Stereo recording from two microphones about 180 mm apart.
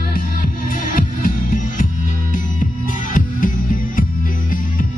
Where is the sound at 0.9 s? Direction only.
50° left (ahead or behind).